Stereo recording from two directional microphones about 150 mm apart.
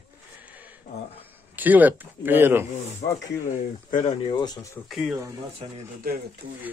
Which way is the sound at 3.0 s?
55° left (ahead or behind).